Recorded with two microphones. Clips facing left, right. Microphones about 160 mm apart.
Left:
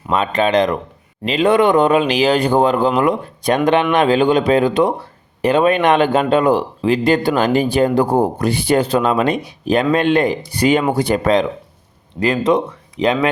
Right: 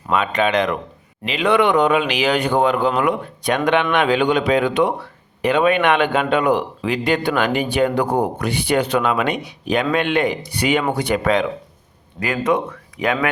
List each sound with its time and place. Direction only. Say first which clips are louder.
0.1 s speech: left 3 dB; 35° left (ahead or behind)